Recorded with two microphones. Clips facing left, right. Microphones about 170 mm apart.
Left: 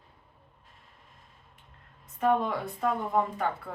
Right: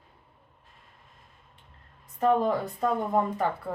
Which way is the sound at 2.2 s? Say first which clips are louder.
Right 3 dB; 40° right (ahead or behind).